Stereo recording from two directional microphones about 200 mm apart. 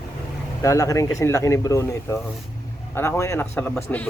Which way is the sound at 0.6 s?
15° left (ahead or behind).